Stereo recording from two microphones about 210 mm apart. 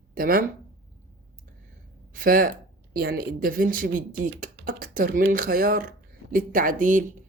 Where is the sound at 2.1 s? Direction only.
40° right (ahead or behind).